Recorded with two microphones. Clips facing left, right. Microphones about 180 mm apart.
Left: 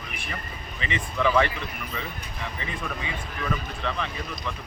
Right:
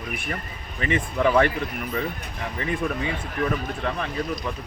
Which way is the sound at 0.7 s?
50° right (ahead or behind).